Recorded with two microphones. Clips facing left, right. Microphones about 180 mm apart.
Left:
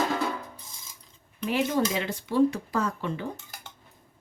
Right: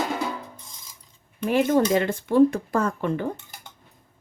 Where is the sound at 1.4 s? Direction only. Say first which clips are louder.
Right 6 dB; 50° right (ahead or behind).